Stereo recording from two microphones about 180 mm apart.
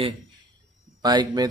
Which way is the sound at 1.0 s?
25° right (ahead or behind).